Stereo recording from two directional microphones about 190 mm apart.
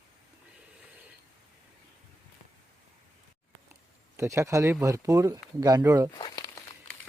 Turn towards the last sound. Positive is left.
turn(degrees=25)  # may be behind; listen again after turning